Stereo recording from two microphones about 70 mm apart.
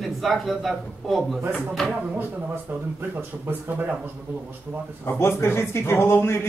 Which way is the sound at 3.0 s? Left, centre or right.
Right.